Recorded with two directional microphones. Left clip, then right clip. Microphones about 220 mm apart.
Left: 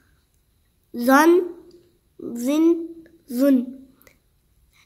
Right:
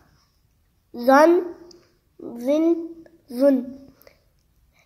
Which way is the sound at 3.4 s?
50° left (ahead or behind).